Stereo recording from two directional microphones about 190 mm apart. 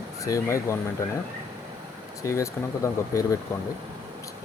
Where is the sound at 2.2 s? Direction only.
15° left (ahead or behind).